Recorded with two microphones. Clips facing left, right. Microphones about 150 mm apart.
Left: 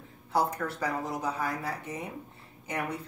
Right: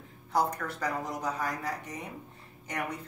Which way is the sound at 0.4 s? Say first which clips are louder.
Left 1 dB; 5° left (ahead or behind).